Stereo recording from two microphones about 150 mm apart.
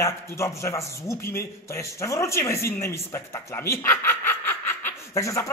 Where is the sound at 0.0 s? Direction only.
20° left (ahead or behind).